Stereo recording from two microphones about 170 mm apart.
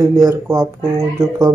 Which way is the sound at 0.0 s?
20° right (ahead or behind).